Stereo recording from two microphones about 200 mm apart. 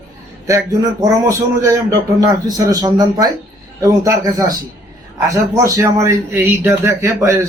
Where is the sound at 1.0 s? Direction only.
15° right (ahead or behind).